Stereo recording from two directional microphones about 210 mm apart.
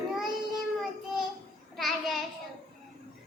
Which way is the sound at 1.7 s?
Centre (ahead or behind).